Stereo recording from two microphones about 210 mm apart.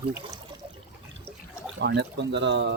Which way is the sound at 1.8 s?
55° right (ahead or behind).